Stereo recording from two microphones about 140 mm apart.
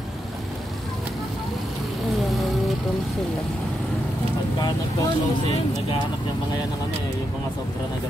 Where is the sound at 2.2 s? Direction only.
Centre (ahead or behind).